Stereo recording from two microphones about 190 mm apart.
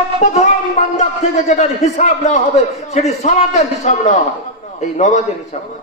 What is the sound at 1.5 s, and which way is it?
A man's voice, 35° left (ahead or behind).